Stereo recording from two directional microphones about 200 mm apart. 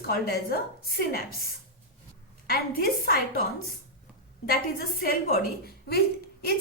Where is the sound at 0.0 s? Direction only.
50° left (ahead or behind).